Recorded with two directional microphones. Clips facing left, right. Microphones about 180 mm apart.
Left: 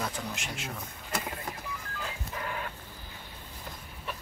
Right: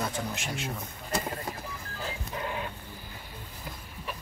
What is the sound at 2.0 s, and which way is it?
Music, 25° right (ahead or behind).